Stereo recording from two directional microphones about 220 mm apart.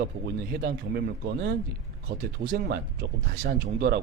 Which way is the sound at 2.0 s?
45° right (ahead or behind).